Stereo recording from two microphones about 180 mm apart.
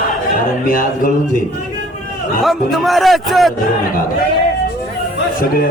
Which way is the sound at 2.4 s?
Centre (ahead or behind).